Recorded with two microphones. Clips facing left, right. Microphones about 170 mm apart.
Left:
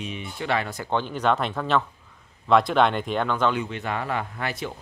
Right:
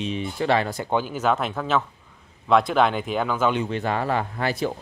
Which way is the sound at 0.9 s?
5° right (ahead or behind).